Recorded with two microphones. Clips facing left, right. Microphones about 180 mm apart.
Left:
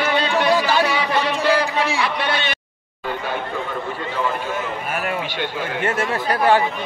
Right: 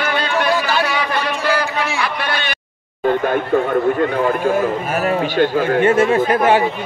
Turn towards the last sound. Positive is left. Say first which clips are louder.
# right 3 dB
turn(degrees=-20)  # may be behind; listen again after turning